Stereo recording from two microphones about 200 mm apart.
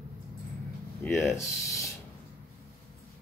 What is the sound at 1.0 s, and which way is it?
Speech, 10° left (ahead or behind).